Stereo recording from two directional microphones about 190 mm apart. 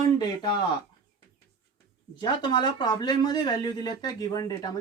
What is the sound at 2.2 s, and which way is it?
Speech, 20° left (ahead or behind).